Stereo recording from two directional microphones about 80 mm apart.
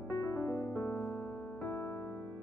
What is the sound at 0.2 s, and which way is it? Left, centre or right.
Music, left.